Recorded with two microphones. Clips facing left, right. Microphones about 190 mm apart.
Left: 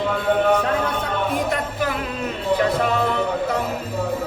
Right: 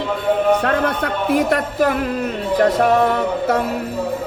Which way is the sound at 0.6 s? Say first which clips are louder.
Right 4 dB; 65° right (ahead or behind).